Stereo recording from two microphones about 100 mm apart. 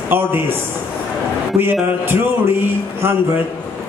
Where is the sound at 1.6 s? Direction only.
20° right (ahead or behind).